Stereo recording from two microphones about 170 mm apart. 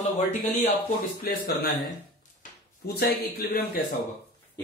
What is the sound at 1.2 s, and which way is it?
Speech, 65° left (ahead or behind).